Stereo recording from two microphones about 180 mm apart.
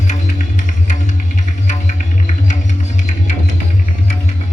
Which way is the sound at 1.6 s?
40° left (ahead or behind).